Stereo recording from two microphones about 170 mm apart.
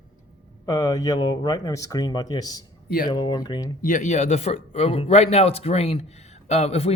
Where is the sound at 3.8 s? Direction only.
50° left (ahead or behind).